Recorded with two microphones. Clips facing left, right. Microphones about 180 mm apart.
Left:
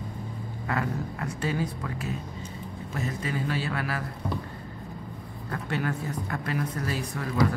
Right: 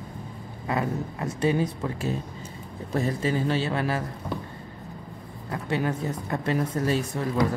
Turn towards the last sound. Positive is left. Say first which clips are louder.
# right 6 dB
turn(degrees=-25)  # may be behind; listen again after turning